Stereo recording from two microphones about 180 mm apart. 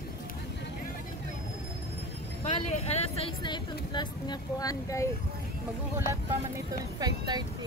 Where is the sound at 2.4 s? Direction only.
35° left (ahead or behind); by 5.0 s 20° left (ahead or behind).